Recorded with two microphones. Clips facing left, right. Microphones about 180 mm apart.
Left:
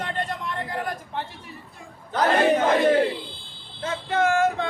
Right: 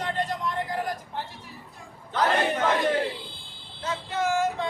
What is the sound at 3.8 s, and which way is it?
Speech, 55° left (ahead or behind).